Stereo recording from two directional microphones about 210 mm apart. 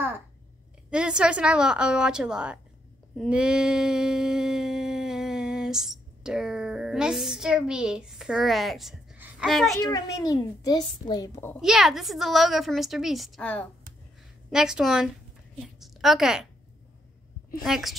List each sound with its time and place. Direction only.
0.8 s a woman's voice: 5° right (ahead or behind)
3.2 s a sound: 5° right (ahead or behind)
9.8 s a child's voice: 15° left (ahead or behind)
11.6 s a woman's voice: centre (ahead or behind)
17.6 s a woman's voice: centre (ahead or behind)